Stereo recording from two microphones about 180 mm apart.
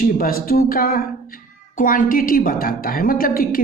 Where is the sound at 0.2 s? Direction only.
55° left (ahead or behind).